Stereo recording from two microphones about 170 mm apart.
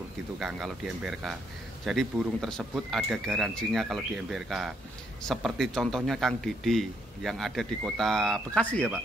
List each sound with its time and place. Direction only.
0.4 s a man's voice: centre (ahead or behind)